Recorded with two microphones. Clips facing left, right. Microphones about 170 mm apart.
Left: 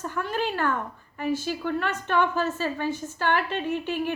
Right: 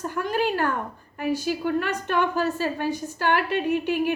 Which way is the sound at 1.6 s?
35° right (ahead or behind).